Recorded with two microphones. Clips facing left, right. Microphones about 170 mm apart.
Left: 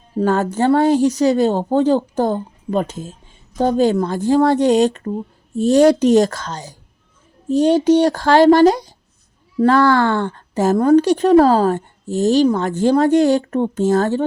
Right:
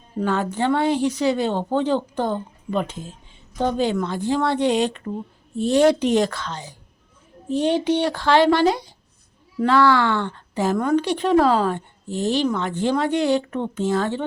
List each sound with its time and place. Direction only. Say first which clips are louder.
0.2 s a woman's voice: left 5 dB; 45° left (ahead or behind)